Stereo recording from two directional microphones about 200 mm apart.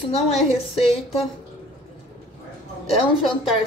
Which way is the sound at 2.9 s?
25° left (ahead or behind).